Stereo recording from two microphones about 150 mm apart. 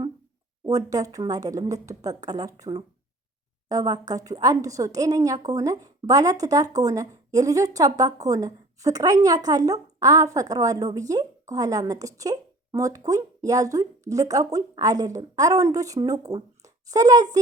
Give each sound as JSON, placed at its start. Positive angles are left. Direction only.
{"t": 0.6, "sound": "a woman's voice", "side_deg": -25}